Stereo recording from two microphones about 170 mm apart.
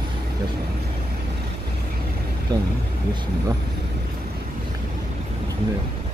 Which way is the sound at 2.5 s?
20° right (ahead or behind).